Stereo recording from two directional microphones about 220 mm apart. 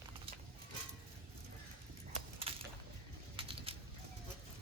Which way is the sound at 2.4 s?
25° right (ahead or behind).